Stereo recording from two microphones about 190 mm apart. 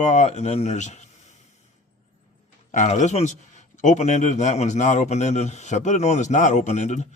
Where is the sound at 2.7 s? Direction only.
40° left (ahead or behind).